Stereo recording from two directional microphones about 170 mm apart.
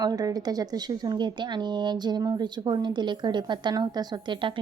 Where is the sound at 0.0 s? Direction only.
20° right (ahead or behind).